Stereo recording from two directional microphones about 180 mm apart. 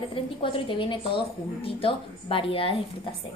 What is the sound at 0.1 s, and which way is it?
A woman's voice, 30° left (ahead or behind).